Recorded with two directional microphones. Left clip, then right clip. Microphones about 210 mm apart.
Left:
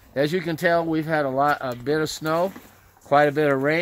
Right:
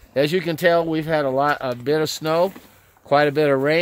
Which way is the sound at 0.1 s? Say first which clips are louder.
Right 3 dB; 50° right (ahead or behind).